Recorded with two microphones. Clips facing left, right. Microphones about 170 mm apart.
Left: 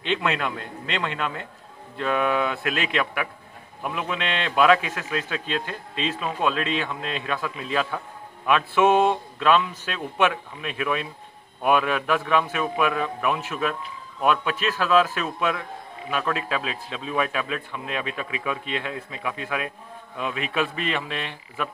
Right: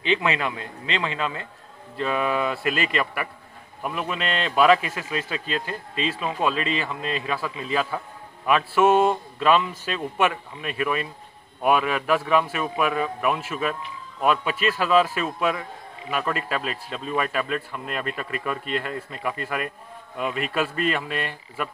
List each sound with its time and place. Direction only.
0.0 s a man's voice: 5° right (ahead or behind)